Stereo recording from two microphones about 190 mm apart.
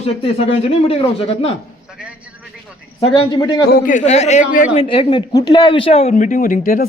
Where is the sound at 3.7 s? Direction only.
50° left (ahead or behind).